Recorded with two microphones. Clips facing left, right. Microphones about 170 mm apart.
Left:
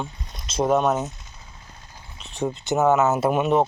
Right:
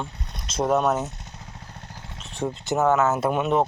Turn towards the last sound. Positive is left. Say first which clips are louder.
# left 2 dB
turn(degrees=5)  # may be behind; listen again after turning